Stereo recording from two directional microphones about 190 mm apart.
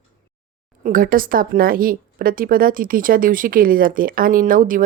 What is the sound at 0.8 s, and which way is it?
A woman's voice, 45° right (ahead or behind).